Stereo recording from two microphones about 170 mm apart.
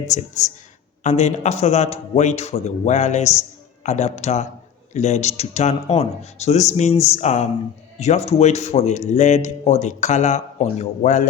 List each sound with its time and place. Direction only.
0.1 s a man's voice: 45° left (ahead or behind)